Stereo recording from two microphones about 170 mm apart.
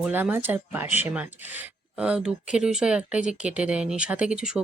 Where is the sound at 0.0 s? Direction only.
10° right (ahead or behind).